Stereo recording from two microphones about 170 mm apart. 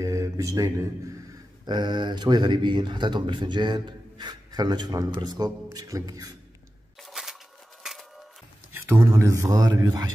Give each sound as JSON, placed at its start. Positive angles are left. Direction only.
{"t": 0.0, "sound": "speech", "side_deg": -20}
{"t": 7.0, "sound": "a sound", "side_deg": 0}
{"t": 7.8, "sound": "music", "side_deg": 0}
{"t": 8.7, "sound": "speech", "side_deg": -15}